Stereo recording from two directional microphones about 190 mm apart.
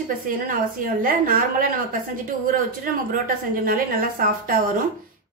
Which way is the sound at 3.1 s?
45° right (ahead or behind).